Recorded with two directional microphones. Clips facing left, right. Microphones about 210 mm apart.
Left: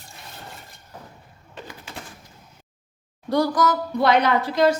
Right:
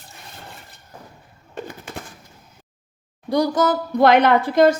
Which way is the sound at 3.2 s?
15° right (ahead or behind).